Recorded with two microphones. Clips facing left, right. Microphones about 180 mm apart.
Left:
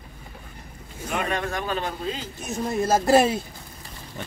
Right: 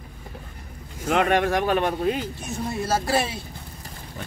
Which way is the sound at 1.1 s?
75° right (ahead or behind).